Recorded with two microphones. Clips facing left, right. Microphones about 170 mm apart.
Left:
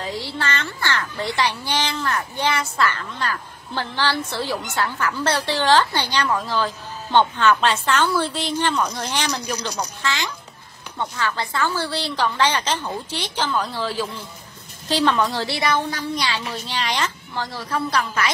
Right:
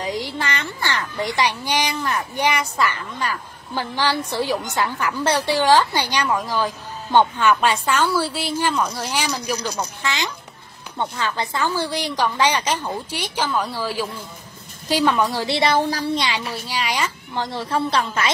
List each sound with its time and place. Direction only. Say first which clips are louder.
0.0 s speech: right 2 dB; 15° right (ahead or behind)
10.0 s a woman's voice: left 1 dB; 20° right (ahead or behind)
15.5 s speech: right 4 dB; 30° right (ahead or behind)
16.2 s speech: right 1 dB; 15° right (ahead or behind)
17.4 s a woman's voice: right 3 dB; 25° right (ahead or behind)